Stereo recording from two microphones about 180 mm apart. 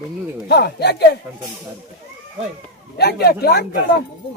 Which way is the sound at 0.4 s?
65° left (ahead or behind).